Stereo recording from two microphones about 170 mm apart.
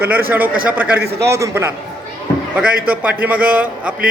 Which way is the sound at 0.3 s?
10° right (ahead or behind).